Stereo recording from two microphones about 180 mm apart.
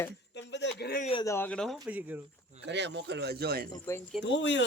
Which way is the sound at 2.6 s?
75° right (ahead or behind).